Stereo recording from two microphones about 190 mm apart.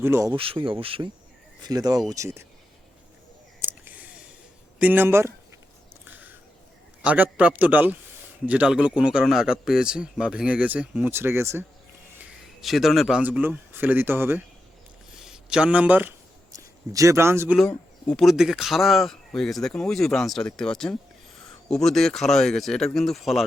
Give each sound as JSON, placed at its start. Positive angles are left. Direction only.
{"t": 0.0, "sound": "speech", "side_deg": -10}
{"t": 0.3, "sound": "speech", "side_deg": -30}
{"t": 3.6, "sound": "a sound", "side_deg": -10}
{"t": 4.8, "sound": "speech", "side_deg": -10}
{"t": 6.1, "sound": "a sound", "side_deg": -10}
{"t": 7.0, "sound": "speech", "side_deg": -5}
{"t": 12.6, "sound": "speech", "side_deg": 0}
{"t": 15.1, "sound": "a sound", "side_deg": -5}
{"t": 17.6, "sound": "speech", "side_deg": 5}